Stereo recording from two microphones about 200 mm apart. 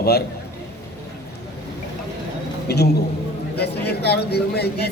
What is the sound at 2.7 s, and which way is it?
A man's voice, 55° left (ahead or behind).